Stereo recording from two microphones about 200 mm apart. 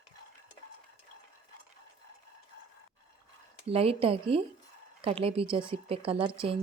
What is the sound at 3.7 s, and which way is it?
A woman's voice, 30° right (ahead or behind).